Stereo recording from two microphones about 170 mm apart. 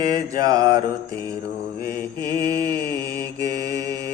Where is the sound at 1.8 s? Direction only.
20° right (ahead or behind).